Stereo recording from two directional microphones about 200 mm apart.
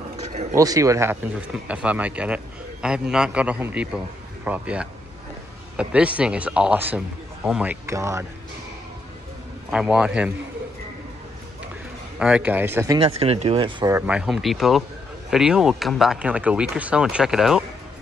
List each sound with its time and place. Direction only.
0.2 s a sound: 35° right (ahead or behind)
0.6 s speech: 15° right (ahead or behind)
9.7 s speech: 5° right (ahead or behind)
12.2 s speech: 5° right (ahead or behind)
13.0 s speech: 30° right (ahead or behind)
14.0 s speech: 5° right (ahead or behind)